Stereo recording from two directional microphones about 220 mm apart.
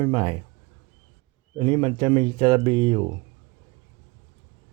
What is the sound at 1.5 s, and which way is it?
Speech, 20° right (ahead or behind).